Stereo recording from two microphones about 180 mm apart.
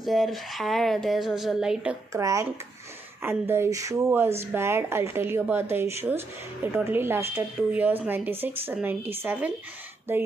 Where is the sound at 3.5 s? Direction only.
15° right (ahead or behind).